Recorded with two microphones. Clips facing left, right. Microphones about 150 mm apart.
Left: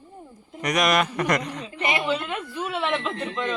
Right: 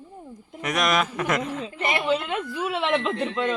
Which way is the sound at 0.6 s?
Centre (ahead or behind).